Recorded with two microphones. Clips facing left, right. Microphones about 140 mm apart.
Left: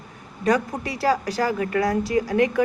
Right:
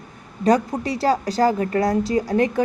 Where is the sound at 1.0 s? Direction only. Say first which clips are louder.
Right 3 dB; 30° right (ahead or behind).